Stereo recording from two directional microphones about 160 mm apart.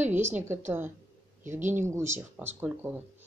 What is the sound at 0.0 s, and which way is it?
A woman's voice, 15° right (ahead or behind).